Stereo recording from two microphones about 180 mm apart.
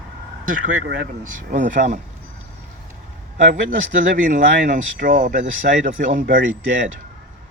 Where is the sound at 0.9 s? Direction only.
55° right (ahead or behind).